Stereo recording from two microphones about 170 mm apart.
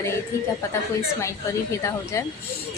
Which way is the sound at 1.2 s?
15° left (ahead or behind).